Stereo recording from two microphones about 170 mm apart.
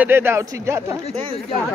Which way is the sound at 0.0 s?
15° right (ahead or behind).